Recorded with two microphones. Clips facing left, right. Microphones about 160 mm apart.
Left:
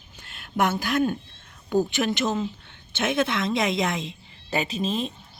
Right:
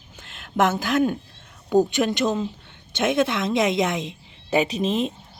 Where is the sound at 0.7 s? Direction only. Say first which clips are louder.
Right 2 dB; 15° right (ahead or behind).